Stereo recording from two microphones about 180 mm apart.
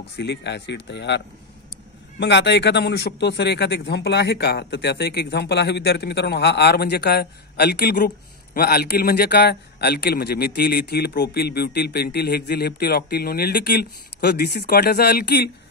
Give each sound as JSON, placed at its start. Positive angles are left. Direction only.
{"t": 0.2, "sound": "a man's voice", "side_deg": 70}